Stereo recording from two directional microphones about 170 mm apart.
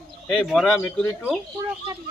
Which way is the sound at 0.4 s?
Centre (ahead or behind).